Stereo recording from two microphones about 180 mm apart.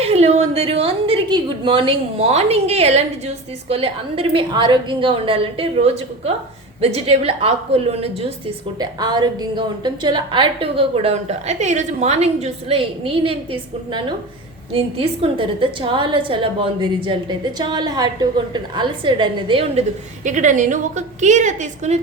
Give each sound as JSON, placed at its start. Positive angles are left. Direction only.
{"t": 0.0, "sound": "a woman's voice", "side_deg": -35}
{"t": 8.8, "sound": "a woman's voice", "side_deg": -25}
{"t": 20.2, "sound": "a woman's voice", "side_deg": -45}